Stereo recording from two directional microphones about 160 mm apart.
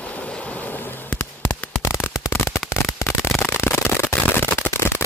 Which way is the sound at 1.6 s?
15° left (ahead or behind).